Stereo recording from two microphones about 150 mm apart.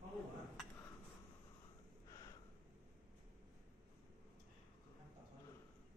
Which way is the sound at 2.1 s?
25° left (ahead or behind).